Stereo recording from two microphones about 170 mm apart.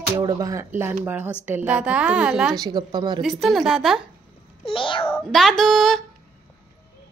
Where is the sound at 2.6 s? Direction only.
25° right (ahead or behind).